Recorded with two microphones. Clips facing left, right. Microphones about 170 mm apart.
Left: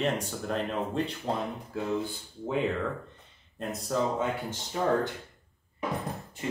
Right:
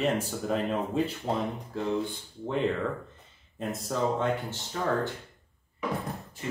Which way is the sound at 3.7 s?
Centre (ahead or behind).